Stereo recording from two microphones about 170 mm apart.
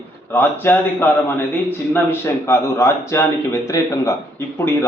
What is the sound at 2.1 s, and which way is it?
A man's voice, 15° left (ahead or behind).